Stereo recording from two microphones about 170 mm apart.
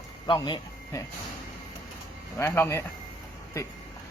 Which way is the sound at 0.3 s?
25° left (ahead or behind).